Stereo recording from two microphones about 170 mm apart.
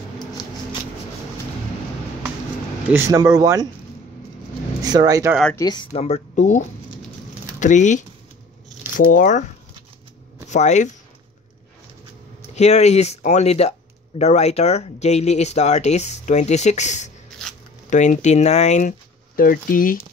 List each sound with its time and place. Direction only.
2.9 s speech: 15° right (ahead or behind)
4.8 s speech: 25° right (ahead or behind)
5.3 s speech: 5° left (ahead or behind)
5.6 s speech: 25° left (ahead or behind)
5.9 s speech: 40° left (ahead or behind)
7.6 s speech: 45° left (ahead or behind)
10.5 s speech: 45° left (ahead or behind)
12.5 s speech: 40° left (ahead or behind); by 20.0 s 55° left (ahead or behind)